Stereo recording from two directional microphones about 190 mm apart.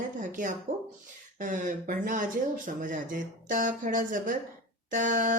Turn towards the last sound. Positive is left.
turn(degrees=-45)  # may be behind; listen again after turning